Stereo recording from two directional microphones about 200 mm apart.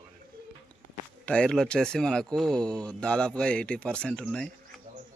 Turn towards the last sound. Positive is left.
turn(degrees=5)  # may be behind; listen again after turning